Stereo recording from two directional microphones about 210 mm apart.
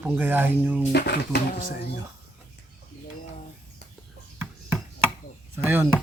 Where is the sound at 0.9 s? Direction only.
50° left (ahead or behind).